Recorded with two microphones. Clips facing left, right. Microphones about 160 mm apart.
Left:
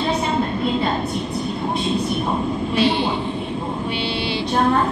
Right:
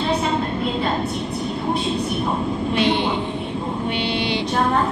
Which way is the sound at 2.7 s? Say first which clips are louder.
Left 1 dB; 20° right (ahead or behind).